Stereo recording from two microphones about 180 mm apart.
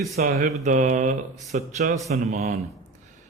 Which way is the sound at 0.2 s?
50° right (ahead or behind).